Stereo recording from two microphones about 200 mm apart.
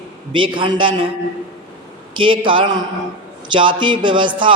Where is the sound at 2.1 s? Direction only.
25° right (ahead or behind).